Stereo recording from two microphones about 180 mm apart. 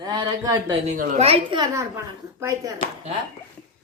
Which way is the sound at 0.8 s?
50° right (ahead or behind).